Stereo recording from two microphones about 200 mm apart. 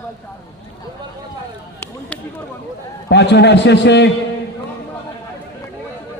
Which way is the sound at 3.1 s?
60° left (ahead or behind).